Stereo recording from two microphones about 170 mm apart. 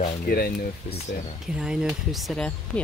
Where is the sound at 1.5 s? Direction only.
5° right (ahead or behind).